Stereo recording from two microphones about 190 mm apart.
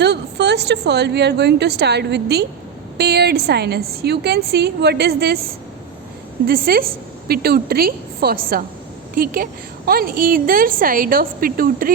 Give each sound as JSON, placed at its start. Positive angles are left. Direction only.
{"t": 0.0, "sound": "a woman's voice", "side_deg": -65}